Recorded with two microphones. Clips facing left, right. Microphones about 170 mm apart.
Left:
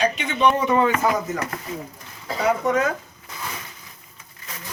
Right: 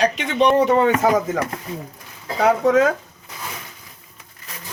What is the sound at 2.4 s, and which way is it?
Speech, 90° right.